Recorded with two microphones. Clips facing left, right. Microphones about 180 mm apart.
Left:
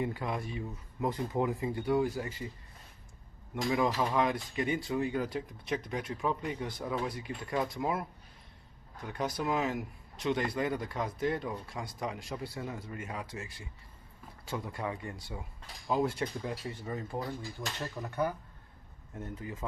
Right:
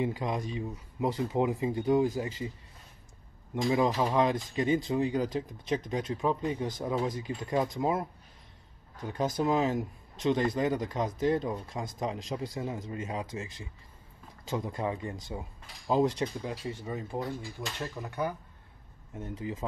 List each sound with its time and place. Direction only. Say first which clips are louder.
0.0 s speech: right 3 dB; 20° right (ahead or behind)
3.7 s speech: right 3 dB; 25° right (ahead or behind)